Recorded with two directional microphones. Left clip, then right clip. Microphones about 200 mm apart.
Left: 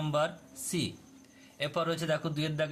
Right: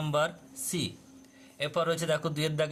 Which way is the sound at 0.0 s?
15° right (ahead or behind).